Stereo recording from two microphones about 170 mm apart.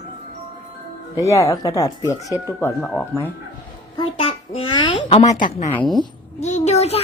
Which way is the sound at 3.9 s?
35° left (ahead or behind).